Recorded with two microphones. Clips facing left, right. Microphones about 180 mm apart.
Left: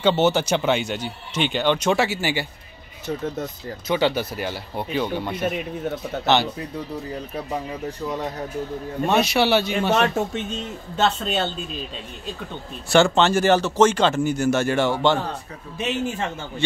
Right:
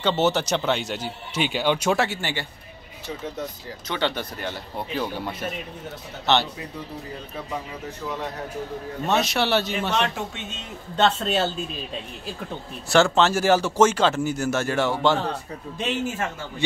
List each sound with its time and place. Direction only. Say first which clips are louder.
0.0 s speech: left 3 dB; centre (ahead or behind)
3.8 s speech: left 5 dB; 10° left (ahead or behind)
9.0 s speech: left 4 dB; centre (ahead or behind)
9.9 s speech: left 5 dB; 45° left (ahead or behind)
11.0 s speech: right 1 dB; centre (ahead or behind)
12.9 s speech: left 2 dB; centre (ahead or behind)
15.8 s speech: left 2 dB; 10° left (ahead or behind)